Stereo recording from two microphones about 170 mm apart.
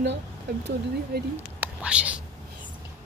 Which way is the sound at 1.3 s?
10° right (ahead or behind).